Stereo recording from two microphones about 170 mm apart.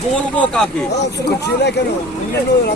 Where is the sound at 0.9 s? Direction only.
80° left.